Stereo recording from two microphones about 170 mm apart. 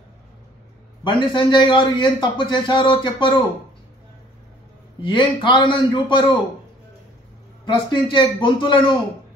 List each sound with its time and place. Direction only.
1.0 s a man's voice: 30° left (ahead or behind)
5.0 s a man's voice: 30° left (ahead or behind)
7.6 s a man's voice: 30° left (ahead or behind)